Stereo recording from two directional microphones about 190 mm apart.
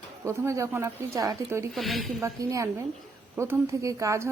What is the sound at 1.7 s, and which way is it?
Speech, centre (ahead or behind).